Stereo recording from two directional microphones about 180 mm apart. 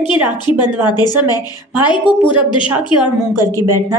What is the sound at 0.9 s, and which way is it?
Speech, 20° left (ahead or behind).